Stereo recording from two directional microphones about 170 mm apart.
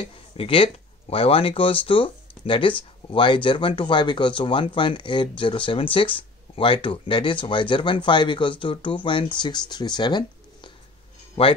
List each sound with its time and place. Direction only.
0.0 s speech: 30° left (ahead or behind)